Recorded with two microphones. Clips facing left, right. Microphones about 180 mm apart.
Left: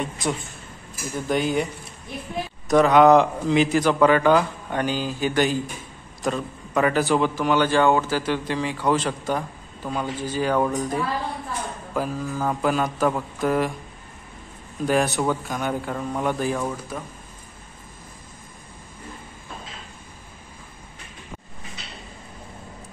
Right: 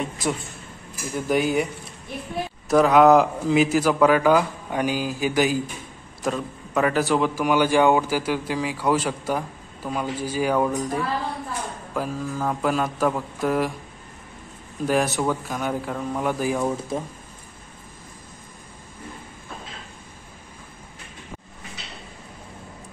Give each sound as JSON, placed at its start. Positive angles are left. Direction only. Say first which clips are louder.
{"t": 0.0, "sound": "a man's voice", "louder": "even", "side_deg": 0}
{"t": 2.7, "sound": "a man's voice", "louder": "even", "side_deg": -5}
{"t": 14.9, "sound": "a man's voice", "louder": "left 1 dB", "side_deg": 0}
{"t": 16.6, "sound": "speech", "louder": "right 4 dB", "side_deg": -25}